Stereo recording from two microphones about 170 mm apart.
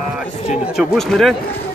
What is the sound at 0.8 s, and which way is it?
Speech, centre (ahead or behind).